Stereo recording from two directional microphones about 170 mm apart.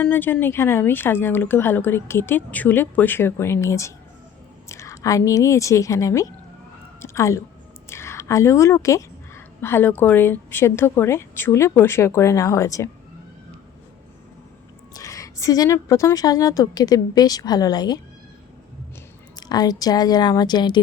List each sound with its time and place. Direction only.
0.0 s a woman's voice: 10° left (ahead or behind)
14.9 s a woman's voice: 20° left (ahead or behind)
19.4 s a woman's voice: 20° left (ahead or behind)